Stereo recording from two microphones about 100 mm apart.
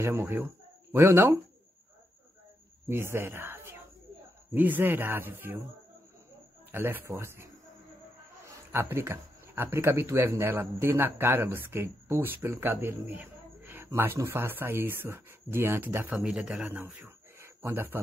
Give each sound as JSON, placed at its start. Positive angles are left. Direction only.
{"t": 0.0, "sound": "speech", "side_deg": -25}
{"t": 2.9, "sound": "speech", "side_deg": -25}
{"t": 6.7, "sound": "speech", "side_deg": -20}
{"t": 8.7, "sound": "speech", "side_deg": -25}
{"t": 17.4, "sound": "a sound", "side_deg": -25}